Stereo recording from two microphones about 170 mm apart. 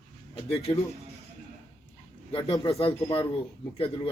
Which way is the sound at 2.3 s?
30° left (ahead or behind).